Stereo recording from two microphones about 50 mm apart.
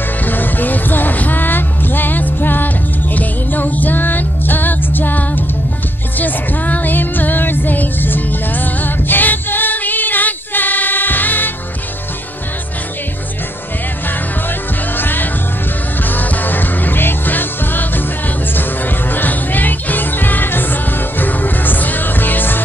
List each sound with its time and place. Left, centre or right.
0.2 s music: left
15.0 s music: left